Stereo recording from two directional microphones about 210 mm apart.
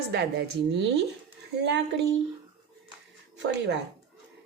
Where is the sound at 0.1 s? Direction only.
50° right (ahead or behind).